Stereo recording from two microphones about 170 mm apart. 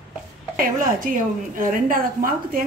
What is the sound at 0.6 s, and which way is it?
A woman's voice, 55° right (ahead or behind).